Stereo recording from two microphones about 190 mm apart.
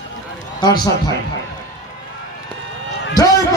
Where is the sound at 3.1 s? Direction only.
20° left (ahead or behind).